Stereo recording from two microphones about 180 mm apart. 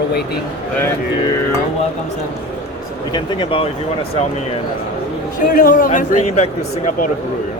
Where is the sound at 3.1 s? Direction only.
25° left (ahead or behind).